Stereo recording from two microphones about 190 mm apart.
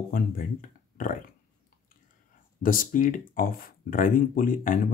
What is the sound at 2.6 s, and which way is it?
Speech, 45° left (ahead or behind).